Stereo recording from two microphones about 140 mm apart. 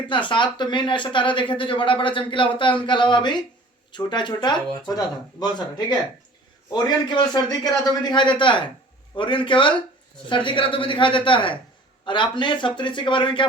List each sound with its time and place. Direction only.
0.1 s speech: 35° left (ahead or behind)